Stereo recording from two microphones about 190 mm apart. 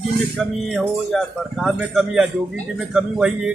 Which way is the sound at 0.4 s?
Centre (ahead or behind).